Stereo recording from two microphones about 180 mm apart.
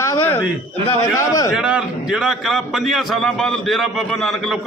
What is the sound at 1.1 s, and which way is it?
Speech, 20° left (ahead or behind).